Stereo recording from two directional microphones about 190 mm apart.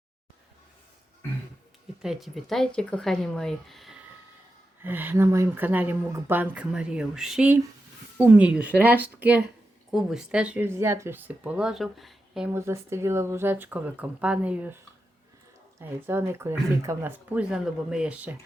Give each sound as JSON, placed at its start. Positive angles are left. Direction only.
{"t": 2.0, "sound": "speech", "side_deg": 0}
{"t": 4.8, "sound": "speech", "side_deg": -10}
{"t": 15.8, "sound": "speech", "side_deg": -10}